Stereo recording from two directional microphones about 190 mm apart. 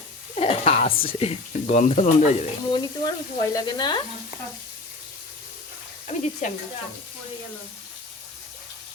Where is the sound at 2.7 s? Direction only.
25° left (ahead or behind).